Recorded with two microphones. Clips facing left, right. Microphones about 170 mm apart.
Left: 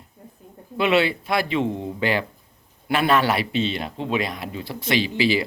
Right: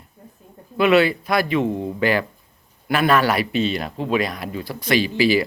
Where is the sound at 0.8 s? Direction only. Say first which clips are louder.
Right 4 dB; 25° left (ahead or behind).